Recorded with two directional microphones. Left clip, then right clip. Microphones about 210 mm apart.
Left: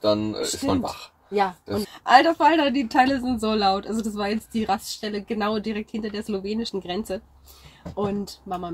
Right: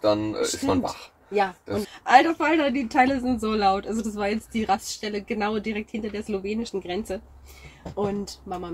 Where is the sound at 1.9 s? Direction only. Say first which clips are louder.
Left 1 dB; 25° left (ahead or behind).